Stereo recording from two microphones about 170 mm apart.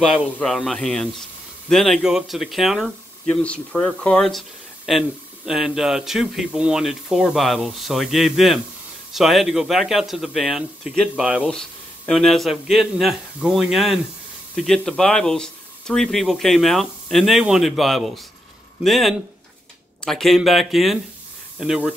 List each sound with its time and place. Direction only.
0.2 s speech: centre (ahead or behind)